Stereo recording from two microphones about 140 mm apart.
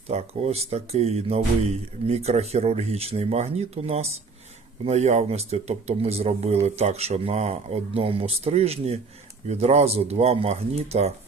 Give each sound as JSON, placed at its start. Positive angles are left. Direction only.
{"t": 0.1, "sound": "speech", "side_deg": -50}